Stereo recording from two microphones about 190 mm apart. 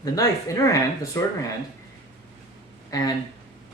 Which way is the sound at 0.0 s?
20° left (ahead or behind).